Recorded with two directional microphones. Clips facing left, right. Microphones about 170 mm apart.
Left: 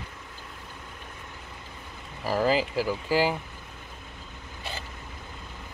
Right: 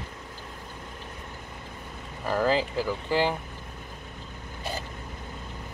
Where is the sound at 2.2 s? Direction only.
5° left (ahead or behind).